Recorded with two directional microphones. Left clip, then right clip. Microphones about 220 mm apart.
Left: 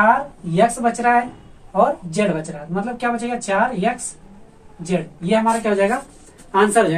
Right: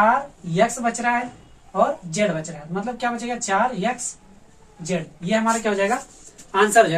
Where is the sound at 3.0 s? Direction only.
10° right (ahead or behind).